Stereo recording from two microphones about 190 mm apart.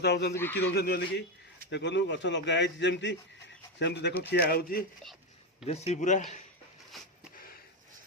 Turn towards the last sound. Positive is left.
turn(degrees=40)  # may be behind; listen again after turning